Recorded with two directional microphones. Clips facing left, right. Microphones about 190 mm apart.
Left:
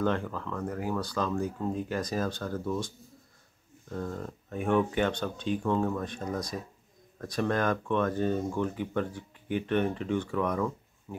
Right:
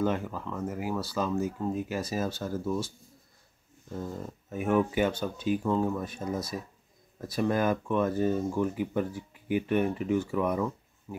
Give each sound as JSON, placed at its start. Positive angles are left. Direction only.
{"t": 0.0, "sound": "speech", "side_deg": -10}
{"t": 3.9, "sound": "speech", "side_deg": -10}